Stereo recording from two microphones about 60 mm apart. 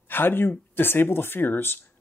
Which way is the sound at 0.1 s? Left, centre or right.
Left.